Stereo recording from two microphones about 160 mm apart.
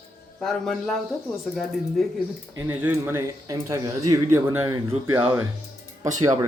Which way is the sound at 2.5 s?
15° right (ahead or behind).